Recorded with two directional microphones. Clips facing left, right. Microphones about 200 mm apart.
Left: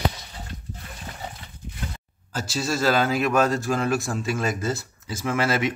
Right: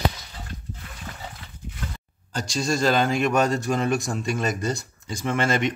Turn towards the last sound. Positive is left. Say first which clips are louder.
# even
turn(degrees=5)  # may be behind; listen again after turning